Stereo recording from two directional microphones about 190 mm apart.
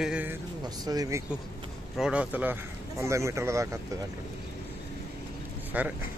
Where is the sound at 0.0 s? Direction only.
5° right (ahead or behind).